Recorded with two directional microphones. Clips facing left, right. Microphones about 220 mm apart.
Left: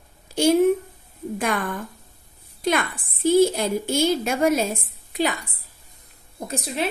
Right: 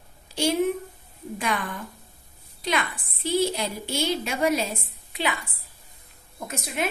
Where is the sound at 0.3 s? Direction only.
50° left (ahead or behind).